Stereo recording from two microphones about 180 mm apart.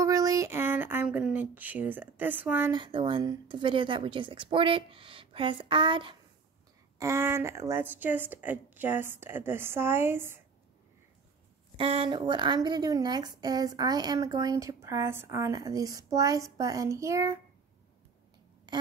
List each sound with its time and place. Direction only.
0.0 s a sound: 20° right (ahead or behind)
2.7 s a woman's voice: 25° right (ahead or behind)
7.0 s a woman's voice: 15° right (ahead or behind)
11.7 s a woman's voice: 30° right (ahead or behind)